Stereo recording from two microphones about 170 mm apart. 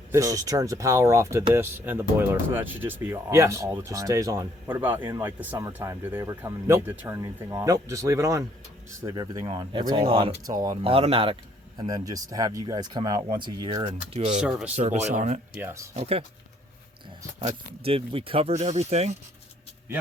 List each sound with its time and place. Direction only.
0.1 s speech: 20° right (ahead or behind)
9.5 s speech: 30° right (ahead or behind)
14.1 s speech: 40° right (ahead or behind)
15.6 s speech: 15° right (ahead or behind)
16.0 s speech: 35° right (ahead or behind)
17.8 s speech: 35° right (ahead or behind)